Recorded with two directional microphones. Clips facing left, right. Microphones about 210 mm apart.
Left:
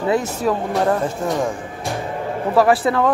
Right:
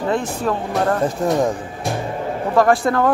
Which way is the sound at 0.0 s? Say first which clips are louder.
Left 2 dB; 10° left (ahead or behind).